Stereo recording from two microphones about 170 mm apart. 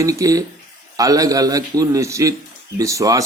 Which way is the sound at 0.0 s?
20° right (ahead or behind).